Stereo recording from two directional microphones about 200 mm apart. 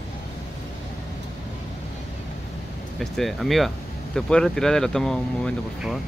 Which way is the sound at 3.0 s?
Centre (ahead or behind).